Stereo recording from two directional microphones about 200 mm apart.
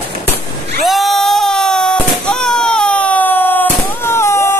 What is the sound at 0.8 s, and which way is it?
Baby cry, centre (ahead or behind).